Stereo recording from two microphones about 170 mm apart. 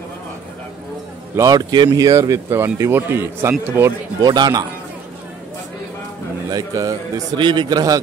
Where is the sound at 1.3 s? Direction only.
20° right (ahead or behind).